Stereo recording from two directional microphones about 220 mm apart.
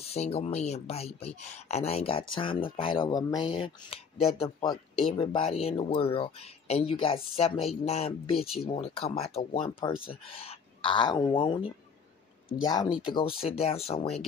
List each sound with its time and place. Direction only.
0.0 s speech: 25° left (ahead or behind)
13.0 s speech: 20° left (ahead or behind)